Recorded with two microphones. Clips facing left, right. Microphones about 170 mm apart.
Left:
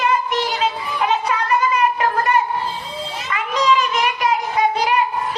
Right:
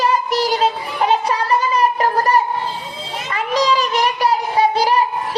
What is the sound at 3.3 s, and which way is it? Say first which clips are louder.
Child singing: right 1 dB; 35° right (ahead or behind).